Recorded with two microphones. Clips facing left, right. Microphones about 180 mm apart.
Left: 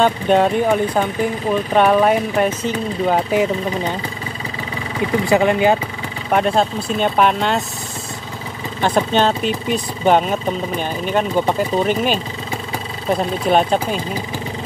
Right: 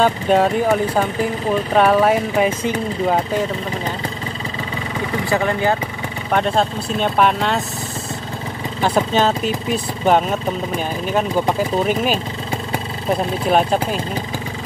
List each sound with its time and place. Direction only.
0.0 s speech: 5° right (ahead or behind)
5.3 s speech: 20° left (ahead or behind)
6.3 s speech: 5° left (ahead or behind)
8.8 s speech: 5° right (ahead or behind)
13.2 s speech: centre (ahead or behind)